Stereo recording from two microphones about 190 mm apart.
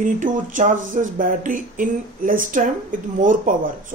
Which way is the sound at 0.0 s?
40° right (ahead or behind).